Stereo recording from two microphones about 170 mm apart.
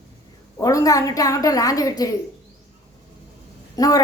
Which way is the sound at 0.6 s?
20° left (ahead or behind).